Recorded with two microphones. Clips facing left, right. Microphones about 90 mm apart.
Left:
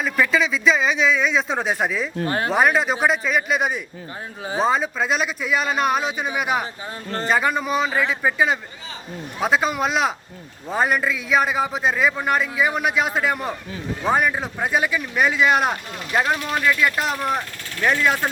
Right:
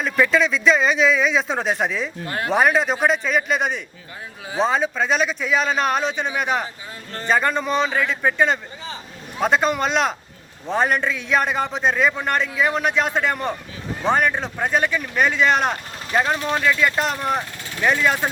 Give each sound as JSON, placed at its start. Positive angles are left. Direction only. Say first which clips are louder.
{"t": 0.0, "sound": "a man's voice", "louder": "right 2 dB", "side_deg": 0}
{"t": 2.2, "sound": "speech", "louder": "left 4 dB", "side_deg": 30}
{"t": 2.5, "sound": "a man's voice", "louder": "right 2 dB", "side_deg": 0}
{"t": 16.3, "sound": "speech", "louder": "right 1 dB", "side_deg": -30}
{"t": 17.0, "sound": "a man's voice", "louder": "right 1 dB", "side_deg": 0}